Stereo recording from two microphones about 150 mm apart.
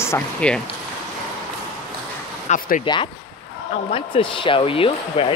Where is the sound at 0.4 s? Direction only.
5° left (ahead or behind).